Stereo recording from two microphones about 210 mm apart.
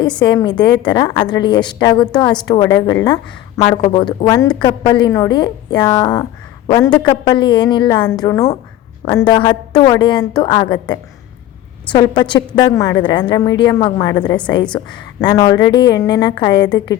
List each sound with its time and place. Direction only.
0.2 s a woman's voice: 20° left (ahead or behind)
3.6 s a woman's voice: 30° left (ahead or behind)